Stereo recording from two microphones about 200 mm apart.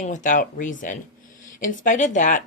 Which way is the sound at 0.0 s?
40° left (ahead or behind).